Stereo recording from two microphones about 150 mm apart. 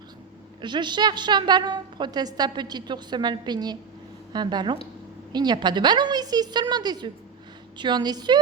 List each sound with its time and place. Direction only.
0.6 s a woman's voice: 30° right (ahead or behind)